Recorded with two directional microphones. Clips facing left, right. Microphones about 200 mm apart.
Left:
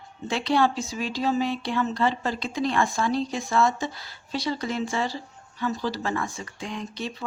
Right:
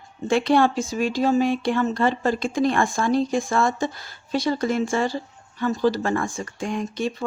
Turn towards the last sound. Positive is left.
turn(degrees=-50)  # may be behind; listen again after turning